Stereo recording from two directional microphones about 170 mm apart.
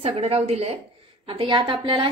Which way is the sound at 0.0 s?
35° right (ahead or behind).